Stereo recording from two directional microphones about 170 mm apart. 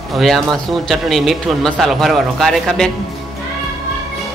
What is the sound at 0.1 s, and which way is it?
Speech, centre (ahead or behind).